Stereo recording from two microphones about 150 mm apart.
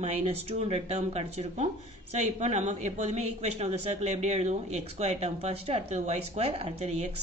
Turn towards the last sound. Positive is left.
turn(degrees=-45)  # may be behind; listen again after turning